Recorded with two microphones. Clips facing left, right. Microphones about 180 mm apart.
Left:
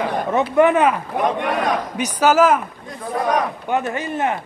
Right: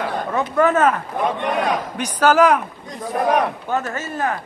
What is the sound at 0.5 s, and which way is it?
Speech, 15° left (ahead or behind).